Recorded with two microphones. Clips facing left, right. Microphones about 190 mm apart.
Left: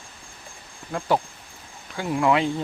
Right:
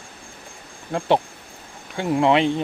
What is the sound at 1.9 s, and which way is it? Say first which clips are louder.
Speech: right 3 dB; 25° right (ahead or behind).